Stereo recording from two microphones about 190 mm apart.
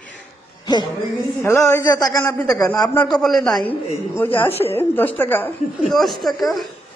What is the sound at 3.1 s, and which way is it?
A man's voice, centre (ahead or behind).